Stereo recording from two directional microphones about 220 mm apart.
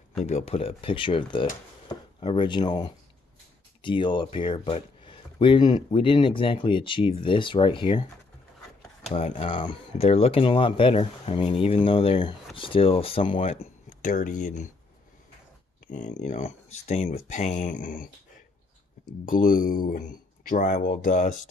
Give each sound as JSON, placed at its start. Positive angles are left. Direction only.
{"t": 0.2, "sound": "speech", "side_deg": 30}
{"t": 15.9, "sound": "speech", "side_deg": 35}
{"t": 19.2, "sound": "speech", "side_deg": 40}